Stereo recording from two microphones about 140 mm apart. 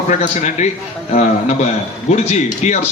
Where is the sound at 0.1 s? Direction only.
55° left (ahead or behind).